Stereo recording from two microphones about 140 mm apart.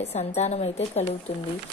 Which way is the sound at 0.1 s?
50° left (ahead or behind).